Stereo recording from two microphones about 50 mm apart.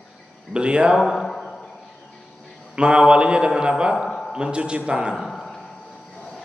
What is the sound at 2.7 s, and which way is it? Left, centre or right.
Speech, centre.